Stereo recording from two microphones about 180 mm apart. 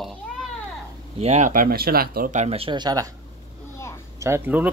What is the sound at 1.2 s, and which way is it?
Speech, 40° right (ahead or behind).